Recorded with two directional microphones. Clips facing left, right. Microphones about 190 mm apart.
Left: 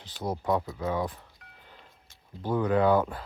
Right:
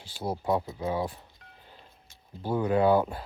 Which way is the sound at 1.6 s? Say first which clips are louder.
Even; 30° right (ahead or behind).